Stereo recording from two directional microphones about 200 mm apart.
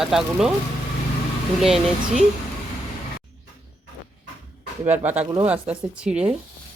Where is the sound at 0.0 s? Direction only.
Centre (ahead or behind).